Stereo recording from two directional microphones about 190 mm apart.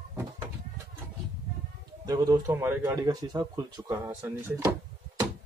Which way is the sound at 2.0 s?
20° right (ahead or behind).